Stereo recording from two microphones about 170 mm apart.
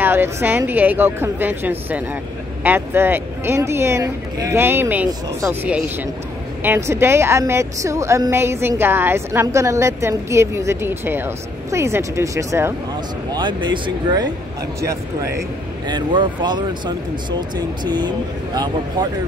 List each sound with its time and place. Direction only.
0.0 s a woman's voice: 15° right (ahead or behind)
13.3 s speech: 25° right (ahead or behind)
15.9 s speech: 25° right (ahead or behind)